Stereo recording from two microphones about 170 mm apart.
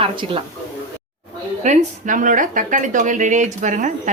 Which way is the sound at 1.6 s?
45° right (ahead or behind).